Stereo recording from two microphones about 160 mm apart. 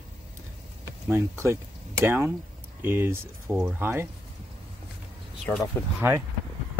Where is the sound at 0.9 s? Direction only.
15° right (ahead or behind).